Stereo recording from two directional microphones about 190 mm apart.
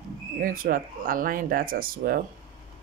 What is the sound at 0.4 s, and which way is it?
Speech, 45° right (ahead or behind).